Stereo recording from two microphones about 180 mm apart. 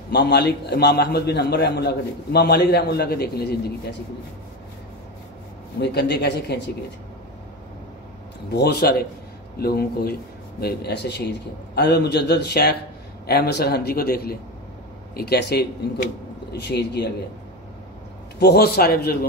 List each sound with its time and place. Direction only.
0.1 s a man's voice: 65° left (ahead or behind)
5.8 s a man's voice: 65° left (ahead or behind)
8.5 s a man's voice: 65° left (ahead or behind)
18.4 s a man's voice: 60° left (ahead or behind)